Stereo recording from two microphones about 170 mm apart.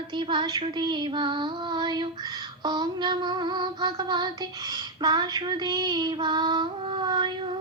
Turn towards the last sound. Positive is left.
turn(degrees=-25)  # may be behind; listen again after turning